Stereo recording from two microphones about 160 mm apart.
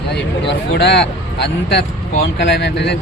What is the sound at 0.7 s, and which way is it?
Speech, 90° left.